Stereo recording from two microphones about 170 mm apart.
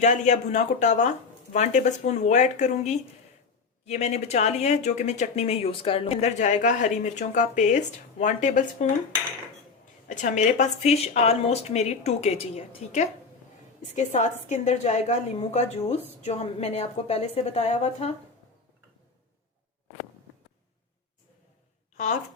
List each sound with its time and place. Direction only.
0.0 s speech: 45° left (ahead or behind)
10.1 s a woman's voice: 45° left (ahead or behind)
21.9 s speech: 45° left (ahead or behind)